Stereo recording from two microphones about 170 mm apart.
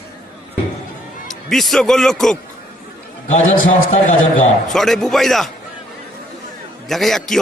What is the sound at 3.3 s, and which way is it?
A man's voice, 45° left (ahead or behind).